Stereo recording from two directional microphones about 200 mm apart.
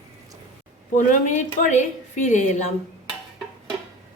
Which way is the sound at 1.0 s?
40° left (ahead or behind).